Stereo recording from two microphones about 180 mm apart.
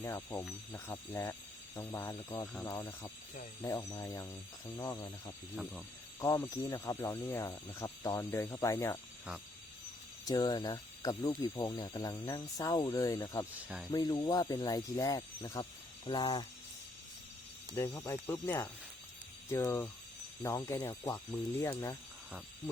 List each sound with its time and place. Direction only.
0.0 s speech: 15° left (ahead or behind)
10.2 s speech: 20° left (ahead or behind)
13.7 s speech: 5° right (ahead or behind)
13.9 s speech: 25° left (ahead or behind)
17.7 s speech: 20° left (ahead or behind)